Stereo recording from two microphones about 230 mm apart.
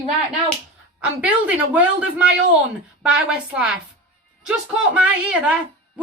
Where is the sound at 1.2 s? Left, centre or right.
Centre.